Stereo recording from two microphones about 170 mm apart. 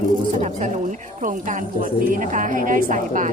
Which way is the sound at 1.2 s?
50° right (ahead or behind).